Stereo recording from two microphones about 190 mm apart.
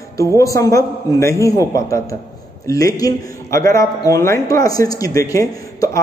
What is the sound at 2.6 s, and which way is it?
A man's voice, 15° left (ahead or behind).